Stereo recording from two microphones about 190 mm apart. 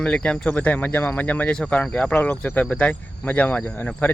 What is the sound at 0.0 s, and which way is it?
Speech, 5° left (ahead or behind).